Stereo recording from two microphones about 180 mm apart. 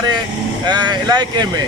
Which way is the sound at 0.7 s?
25° right (ahead or behind).